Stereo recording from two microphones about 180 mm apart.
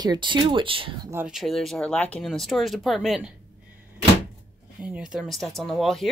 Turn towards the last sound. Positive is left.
turn(degrees=0)  # may be behind; listen again after turning